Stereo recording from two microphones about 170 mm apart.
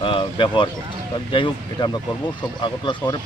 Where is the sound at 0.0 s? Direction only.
30° left (ahead or behind).